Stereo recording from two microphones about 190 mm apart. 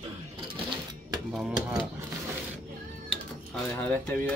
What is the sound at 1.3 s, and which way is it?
Speech, 5° right (ahead or behind).